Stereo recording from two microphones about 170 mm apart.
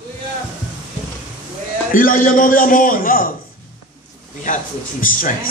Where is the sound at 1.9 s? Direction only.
55° left (ahead or behind).